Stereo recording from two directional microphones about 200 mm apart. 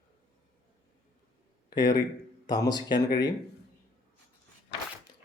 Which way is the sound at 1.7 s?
20° left (ahead or behind).